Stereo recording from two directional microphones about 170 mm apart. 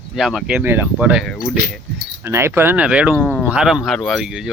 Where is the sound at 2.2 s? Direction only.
15° right (ahead or behind).